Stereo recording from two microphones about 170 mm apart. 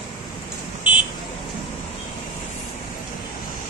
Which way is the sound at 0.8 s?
10° right (ahead or behind).